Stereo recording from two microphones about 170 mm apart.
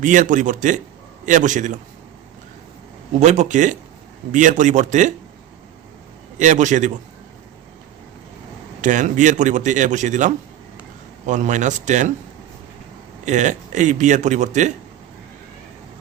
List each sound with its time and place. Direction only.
0.0 s speech: 50° right (ahead or behind)
3.2 s speech: 45° right (ahead or behind)
6.4 s speech: 45° right (ahead or behind)
8.8 s speech: 50° right (ahead or behind)
13.2 s speech: 45° right (ahead or behind)